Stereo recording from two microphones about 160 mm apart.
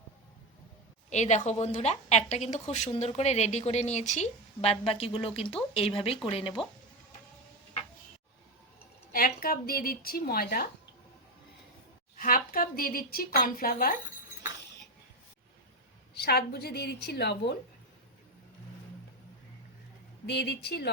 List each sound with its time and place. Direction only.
1.1 s a woman's voice: 45° left (ahead or behind)
9.1 s a woman's voice: 65° left (ahead or behind)
12.1 s a woman's voice: 60° left (ahead or behind)
16.2 s a woman's voice: 80° left
20.2 s speech: 90° left